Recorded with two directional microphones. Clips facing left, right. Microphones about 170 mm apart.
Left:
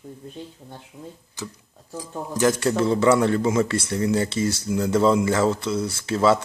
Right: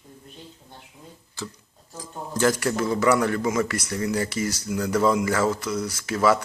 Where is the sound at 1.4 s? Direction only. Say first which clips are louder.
Right 1 dB; 15° left (ahead or behind).